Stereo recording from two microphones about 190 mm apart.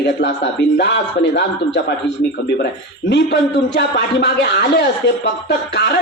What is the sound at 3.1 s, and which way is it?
Speech, 65° left (ahead or behind).